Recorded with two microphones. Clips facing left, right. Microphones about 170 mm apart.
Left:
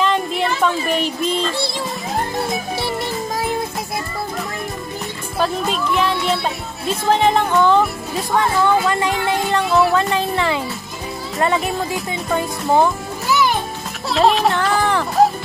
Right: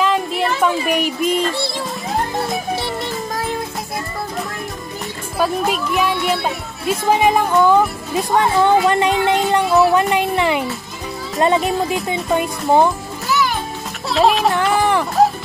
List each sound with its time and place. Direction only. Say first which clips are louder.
0.0 s a sound: right 1 dB; 5° right (ahead or behind)
5.4 s speech: right 2 dB; 10° right (ahead or behind)
8.4 s speech: right 2 dB; 20° right (ahead or behind)
14.1 s music: even; centre (ahead or behind)
14.7 s music: right 2 dB; 15° right (ahead or behind)